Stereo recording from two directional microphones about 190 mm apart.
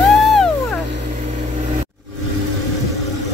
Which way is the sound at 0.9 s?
40° right (ahead or behind).